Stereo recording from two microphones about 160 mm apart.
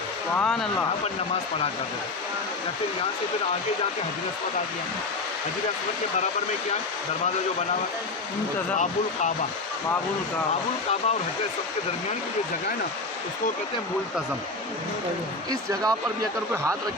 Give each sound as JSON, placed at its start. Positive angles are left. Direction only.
{"t": 0.3, "sound": "speech", "side_deg": 5}
{"t": 15.4, "sound": "speech", "side_deg": -25}